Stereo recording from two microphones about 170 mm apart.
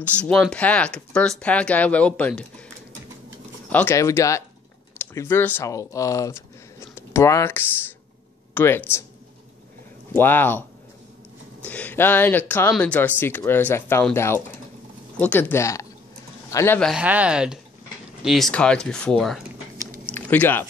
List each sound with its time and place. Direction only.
0.0 s speech: 5° left (ahead or behind)
3.7 s speech: 15° left (ahead or behind)
10.1 s speech: 10° left (ahead or behind)
11.6 s speech: 10° left (ahead or behind)
16.9 s speech: 10° right (ahead or behind)
20.1 s a sound: 10° left (ahead or behind)